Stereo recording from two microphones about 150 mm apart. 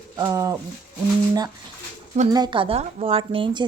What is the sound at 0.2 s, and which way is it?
Speech, 20° right (ahead or behind).